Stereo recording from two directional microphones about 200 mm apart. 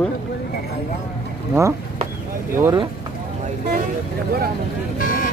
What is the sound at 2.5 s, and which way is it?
Speech, 15° right (ahead or behind).